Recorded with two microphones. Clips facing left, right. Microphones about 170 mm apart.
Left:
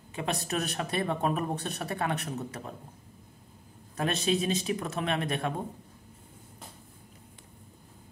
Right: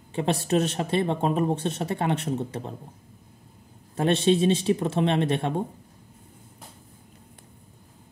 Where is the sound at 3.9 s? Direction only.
30° right (ahead or behind).